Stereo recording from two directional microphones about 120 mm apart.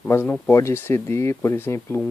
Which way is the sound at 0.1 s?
20° left (ahead or behind).